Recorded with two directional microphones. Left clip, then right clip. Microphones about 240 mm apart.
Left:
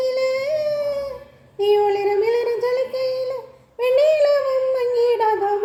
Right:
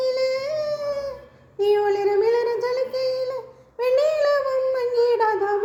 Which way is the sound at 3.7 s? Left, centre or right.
Centre.